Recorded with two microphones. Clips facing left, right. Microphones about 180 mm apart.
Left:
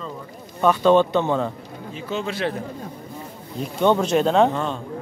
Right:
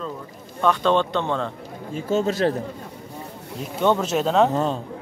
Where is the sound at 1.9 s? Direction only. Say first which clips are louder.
Right 6 dB; 45° right (ahead or behind).